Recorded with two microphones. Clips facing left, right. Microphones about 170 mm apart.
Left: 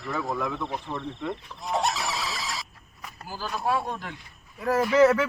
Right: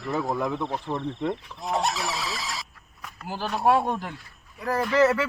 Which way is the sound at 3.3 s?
65° right (ahead or behind).